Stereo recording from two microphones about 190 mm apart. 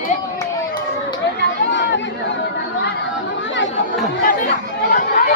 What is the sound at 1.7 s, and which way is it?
Chatter, 70° left (ahead or behind).